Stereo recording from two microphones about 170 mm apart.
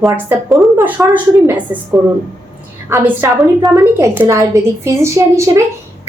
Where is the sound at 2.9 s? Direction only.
15° right (ahead or behind).